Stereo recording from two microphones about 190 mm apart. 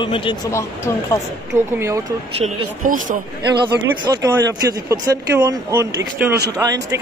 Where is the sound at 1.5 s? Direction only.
15° right (ahead or behind).